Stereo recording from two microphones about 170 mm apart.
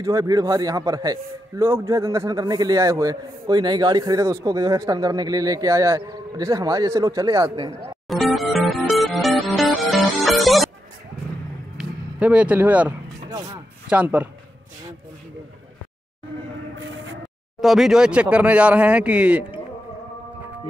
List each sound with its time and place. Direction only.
0.0 s a man's voice: 20° right (ahead or behind)
8.1 s music: centre (ahead or behind)
11.7 s vehicle: 5° right (ahead or behind)
13.3 s a man's voice: 25° right (ahead or behind)
13.8 s speech: 10° right (ahead or behind)
16.7 s a sound: 90° right
17.6 s speech: centre (ahead or behind)